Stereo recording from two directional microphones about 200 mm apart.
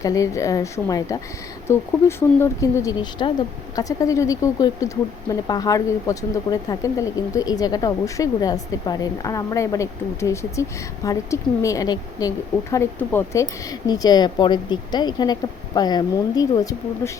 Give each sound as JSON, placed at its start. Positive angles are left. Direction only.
{"t": 0.0, "sound": "speech", "side_deg": 15}